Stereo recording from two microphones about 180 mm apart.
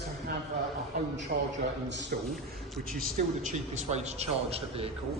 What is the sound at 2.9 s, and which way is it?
A man's voice, 45° right (ahead or behind).